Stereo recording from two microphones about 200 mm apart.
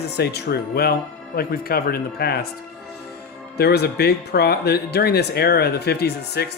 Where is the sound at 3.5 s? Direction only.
55° left (ahead or behind).